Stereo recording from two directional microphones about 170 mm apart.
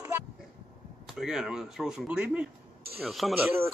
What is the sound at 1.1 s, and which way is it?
Speech, centre (ahead or behind).